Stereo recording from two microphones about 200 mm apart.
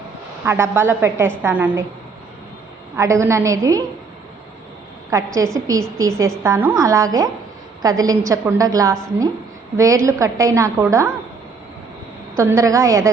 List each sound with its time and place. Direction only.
0.4 s a woman's voice: 10° right (ahead or behind)
2.9 s a woman's voice: 15° right (ahead or behind)
5.1 s a woman's voice: 15° right (ahead or behind)
12.4 s a woman's voice: 15° right (ahead or behind)